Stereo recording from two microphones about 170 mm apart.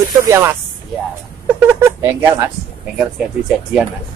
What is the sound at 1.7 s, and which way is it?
Speech, 15° right (ahead or behind).